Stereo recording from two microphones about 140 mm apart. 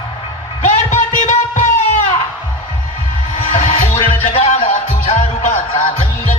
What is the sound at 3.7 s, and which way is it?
Music, 45° left (ahead or behind).